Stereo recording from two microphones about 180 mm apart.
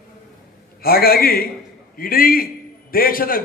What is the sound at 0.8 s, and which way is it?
A man's voice, 55° left (ahead or behind).